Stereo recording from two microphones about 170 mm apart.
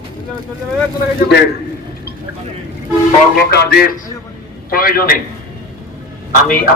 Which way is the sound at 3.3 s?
70° left (ahead or behind).